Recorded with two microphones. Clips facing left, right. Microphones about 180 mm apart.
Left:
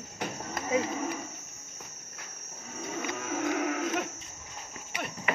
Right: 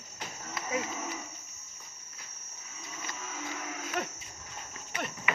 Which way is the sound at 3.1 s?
60° left (ahead or behind).